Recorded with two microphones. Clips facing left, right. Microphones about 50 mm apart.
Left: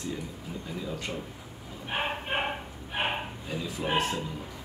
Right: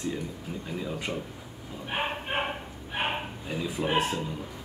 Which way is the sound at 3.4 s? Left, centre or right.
Centre.